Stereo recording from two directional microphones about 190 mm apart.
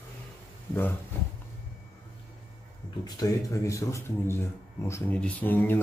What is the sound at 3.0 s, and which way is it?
Speech, 20° left (ahead or behind).